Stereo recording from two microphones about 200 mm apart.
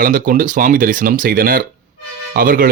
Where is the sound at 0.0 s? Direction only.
45° right (ahead or behind).